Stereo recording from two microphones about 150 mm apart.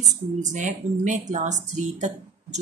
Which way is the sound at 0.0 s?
55° right (ahead or behind).